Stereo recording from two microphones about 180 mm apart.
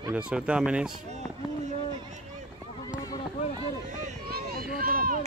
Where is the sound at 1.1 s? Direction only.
40° right (ahead or behind).